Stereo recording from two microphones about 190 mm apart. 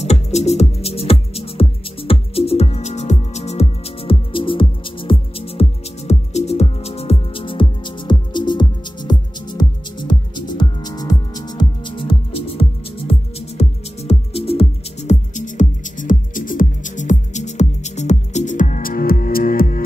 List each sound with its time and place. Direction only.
0.0 s music: 35° left (ahead or behind)